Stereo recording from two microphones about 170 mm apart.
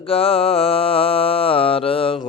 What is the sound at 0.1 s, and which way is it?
Mantra, 35° left (ahead or behind).